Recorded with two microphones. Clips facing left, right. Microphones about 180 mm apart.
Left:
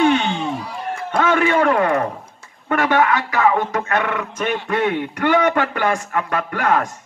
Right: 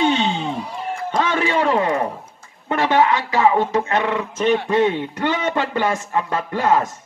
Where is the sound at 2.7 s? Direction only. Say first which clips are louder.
Even; 25° right (ahead or behind).